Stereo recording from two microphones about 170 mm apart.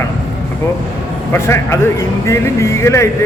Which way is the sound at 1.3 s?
15° left (ahead or behind).